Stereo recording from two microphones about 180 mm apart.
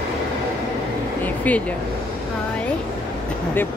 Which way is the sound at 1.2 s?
10° left (ahead or behind).